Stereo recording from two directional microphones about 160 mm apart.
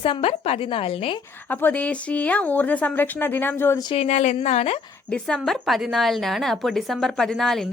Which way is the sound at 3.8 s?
35° left (ahead or behind).